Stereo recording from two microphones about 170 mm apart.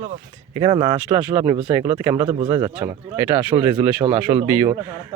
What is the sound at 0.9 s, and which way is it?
Speech, 10° right (ahead or behind).